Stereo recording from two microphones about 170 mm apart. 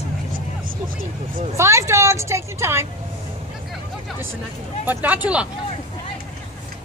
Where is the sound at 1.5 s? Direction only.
15° right (ahead or behind).